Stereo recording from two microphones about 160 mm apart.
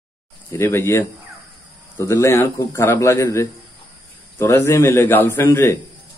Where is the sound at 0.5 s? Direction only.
15° left (ahead or behind).